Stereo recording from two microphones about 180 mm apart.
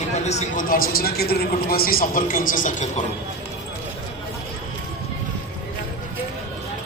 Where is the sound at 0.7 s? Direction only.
55° left (ahead or behind).